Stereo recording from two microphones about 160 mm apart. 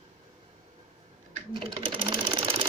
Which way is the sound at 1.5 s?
35° right (ahead or behind).